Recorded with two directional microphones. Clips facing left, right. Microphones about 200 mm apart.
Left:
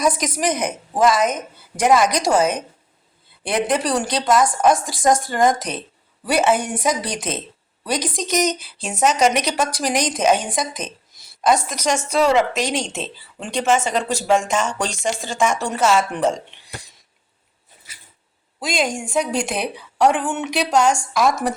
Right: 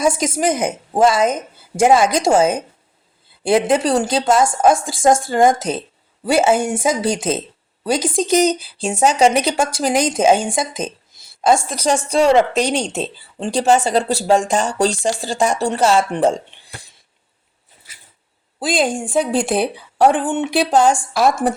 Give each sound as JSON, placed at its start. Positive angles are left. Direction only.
{"t": 0.0, "sound": "a woman's voice", "side_deg": -25}
{"t": 18.6, "sound": "a woman's voice", "side_deg": -30}